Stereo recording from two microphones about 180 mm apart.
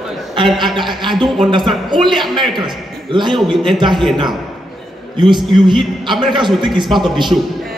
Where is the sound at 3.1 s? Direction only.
25° right (ahead or behind).